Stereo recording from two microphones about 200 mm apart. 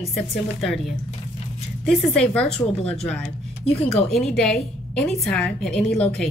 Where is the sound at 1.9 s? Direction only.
5° left (ahead or behind).